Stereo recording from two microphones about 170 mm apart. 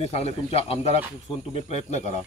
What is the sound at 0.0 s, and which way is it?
Speech, 40° left (ahead or behind).